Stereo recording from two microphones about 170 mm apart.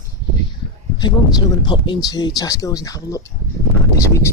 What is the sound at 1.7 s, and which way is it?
Speech, 25° left (ahead or behind).